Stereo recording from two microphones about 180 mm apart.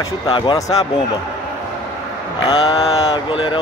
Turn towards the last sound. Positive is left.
turn(degrees=30)  # may be behind; listen again after turning